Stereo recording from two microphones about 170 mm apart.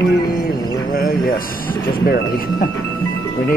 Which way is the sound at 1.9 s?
70° left (ahead or behind).